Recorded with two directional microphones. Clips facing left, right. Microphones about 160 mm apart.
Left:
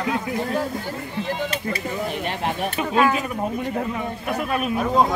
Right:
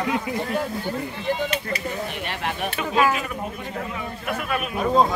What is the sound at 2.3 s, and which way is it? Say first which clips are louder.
Speech: left 3 dB; 25° left (ahead or behind).